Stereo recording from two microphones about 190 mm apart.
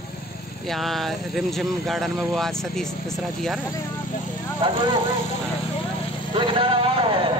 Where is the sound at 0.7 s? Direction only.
Centre (ahead or behind).